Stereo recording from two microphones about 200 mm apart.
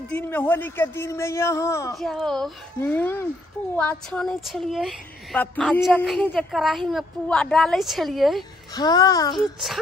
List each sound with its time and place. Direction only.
0.1 s speech: 10° left (ahead or behind)
2.0 s a woman's voice: centre (ahead or behind)
8.7 s a child's voice: 20° left (ahead or behind)